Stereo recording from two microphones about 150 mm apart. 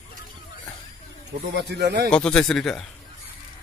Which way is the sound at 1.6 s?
90° right.